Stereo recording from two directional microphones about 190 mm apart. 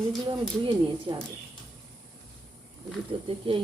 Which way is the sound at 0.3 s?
25° right (ahead or behind).